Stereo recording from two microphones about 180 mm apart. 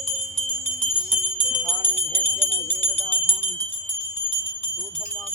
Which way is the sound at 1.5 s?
10° left (ahead or behind).